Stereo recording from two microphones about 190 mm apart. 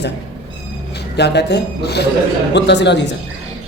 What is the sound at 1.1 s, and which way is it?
A man's voice, 60° left (ahead or behind).